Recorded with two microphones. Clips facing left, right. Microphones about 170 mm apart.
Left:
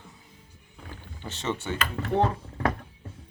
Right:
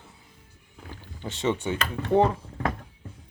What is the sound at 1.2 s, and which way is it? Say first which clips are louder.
Speech: right 5 dB; 15° right (ahead or behind).